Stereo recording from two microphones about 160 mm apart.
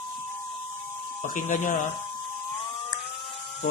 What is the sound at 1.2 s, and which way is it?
Speech, 55° left (ahead or behind).